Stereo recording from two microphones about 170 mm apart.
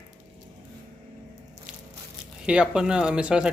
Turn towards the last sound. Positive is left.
turn(degrees=-5)  # may be behind; listen again after turning